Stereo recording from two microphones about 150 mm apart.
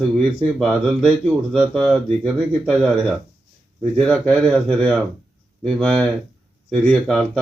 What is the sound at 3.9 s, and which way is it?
Speech, 5° left (ahead or behind).